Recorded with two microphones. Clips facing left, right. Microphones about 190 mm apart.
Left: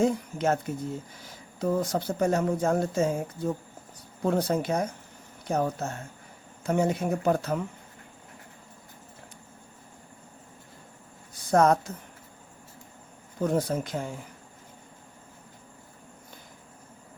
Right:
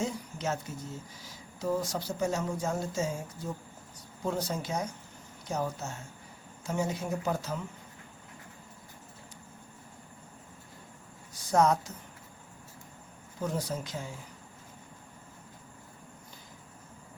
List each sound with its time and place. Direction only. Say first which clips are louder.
0.0 s speech: left 9 dB; 55° left (ahead or behind)
11.4 s speech: left 4 dB; 55° left (ahead or behind)
13.4 s speech: left 7 dB; 55° left (ahead or behind)